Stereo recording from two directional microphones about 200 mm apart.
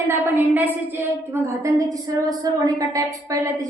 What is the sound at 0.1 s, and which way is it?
A woman's voice, 10° right (ahead or behind).